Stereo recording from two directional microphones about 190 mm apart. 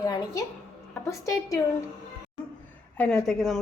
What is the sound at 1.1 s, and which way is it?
Speech, 15° left (ahead or behind).